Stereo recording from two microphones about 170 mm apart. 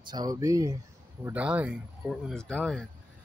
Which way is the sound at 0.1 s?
20° right (ahead or behind).